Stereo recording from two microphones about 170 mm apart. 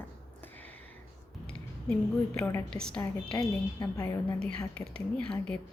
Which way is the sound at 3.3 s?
20° left (ahead or behind).